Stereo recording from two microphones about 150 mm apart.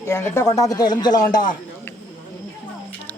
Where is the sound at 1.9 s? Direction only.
15° left (ahead or behind).